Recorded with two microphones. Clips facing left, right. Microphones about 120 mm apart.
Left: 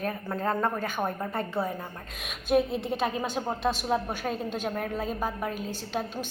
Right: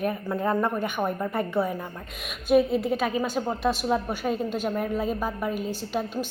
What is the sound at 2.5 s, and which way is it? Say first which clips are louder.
Speech: right 4 dB; 5° right (ahead or behind).